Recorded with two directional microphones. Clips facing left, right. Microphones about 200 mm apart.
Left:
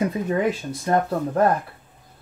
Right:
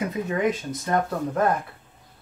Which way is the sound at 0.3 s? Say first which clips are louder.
Left 2 dB; 30° left (ahead or behind).